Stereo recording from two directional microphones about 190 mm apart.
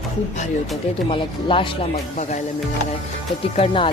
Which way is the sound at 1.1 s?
25° left (ahead or behind).